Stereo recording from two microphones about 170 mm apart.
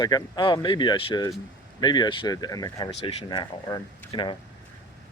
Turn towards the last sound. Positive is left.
turn(degrees=30)  # may be behind; listen again after turning